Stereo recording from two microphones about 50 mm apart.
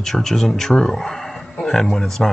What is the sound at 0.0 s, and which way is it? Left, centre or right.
Speech, centre.